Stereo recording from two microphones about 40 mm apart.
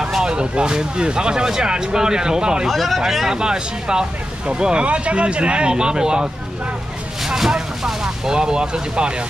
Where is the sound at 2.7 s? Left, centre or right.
Centre.